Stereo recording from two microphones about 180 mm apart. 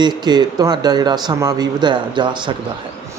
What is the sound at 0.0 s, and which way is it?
A man's voice, 25° right (ahead or behind).